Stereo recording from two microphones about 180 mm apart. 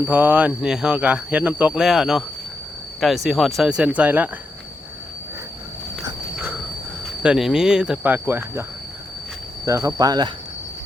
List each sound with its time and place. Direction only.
0.0 s speech: 10° right (ahead or behind)
3.2 s speech: centre (ahead or behind)
6.1 s a sound: 10° right (ahead or behind)
7.2 s speech: 5° right (ahead or behind)
9.6 s speech: 15° right (ahead or behind)